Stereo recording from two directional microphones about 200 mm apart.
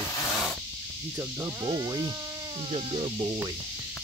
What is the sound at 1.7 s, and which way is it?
Speech, 20° right (ahead or behind).